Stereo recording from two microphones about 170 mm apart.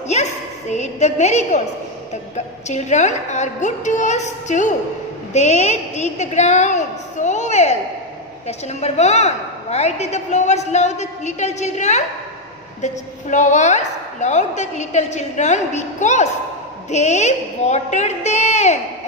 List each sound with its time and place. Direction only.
0.1 s a woman's voice: 45° left (ahead or behind)